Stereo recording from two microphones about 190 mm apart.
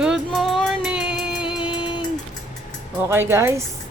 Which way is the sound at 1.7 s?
25° left (ahead or behind).